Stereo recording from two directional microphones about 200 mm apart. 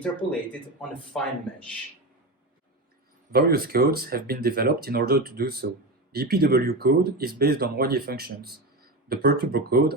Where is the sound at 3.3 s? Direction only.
50° right (ahead or behind).